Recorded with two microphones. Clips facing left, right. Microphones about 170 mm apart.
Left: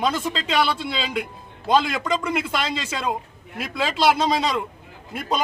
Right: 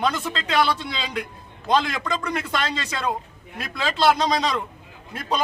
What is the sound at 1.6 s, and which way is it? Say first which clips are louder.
A man's voice: left 2 dB; 5° left (ahead or behind).